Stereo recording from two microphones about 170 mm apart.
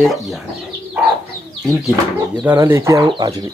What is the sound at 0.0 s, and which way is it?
Speech, centre (ahead or behind).